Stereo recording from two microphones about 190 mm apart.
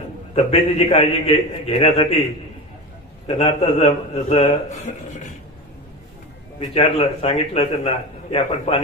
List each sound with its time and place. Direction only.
0.3 s a man's voice: 30° left (ahead or behind)
3.3 s a man's voice: 35° left (ahead or behind)
6.7 s a man's voice: 30° left (ahead or behind)